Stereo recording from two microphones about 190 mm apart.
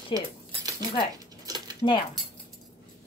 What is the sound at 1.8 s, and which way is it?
Speech, 25° left (ahead or behind).